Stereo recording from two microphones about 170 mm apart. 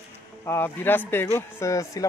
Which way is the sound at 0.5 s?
10° left (ahead or behind).